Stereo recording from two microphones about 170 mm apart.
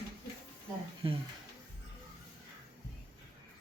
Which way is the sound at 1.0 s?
35° right (ahead or behind).